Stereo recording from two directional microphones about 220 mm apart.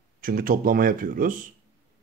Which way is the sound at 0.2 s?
40° right (ahead or behind).